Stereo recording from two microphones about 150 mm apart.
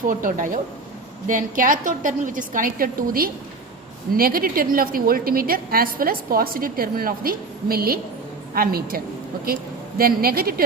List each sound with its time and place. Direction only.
0.1 s a woman's voice: 60° right (ahead or behind); by 9.0 s 80° right
10.0 s a woman's voice: 85° right